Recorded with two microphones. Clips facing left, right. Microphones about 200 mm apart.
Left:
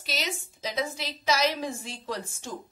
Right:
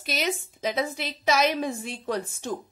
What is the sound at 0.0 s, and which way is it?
A woman's voice, 55° right (ahead or behind).